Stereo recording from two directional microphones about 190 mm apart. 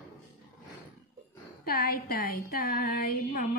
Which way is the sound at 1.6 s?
50° left (ahead or behind).